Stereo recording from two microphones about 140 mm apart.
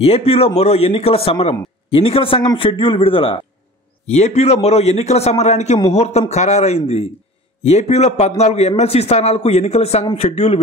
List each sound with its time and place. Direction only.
0.0 s a man's voice: 45° left (ahead or behind)
4.1 s a man's voice: 55° left (ahead or behind)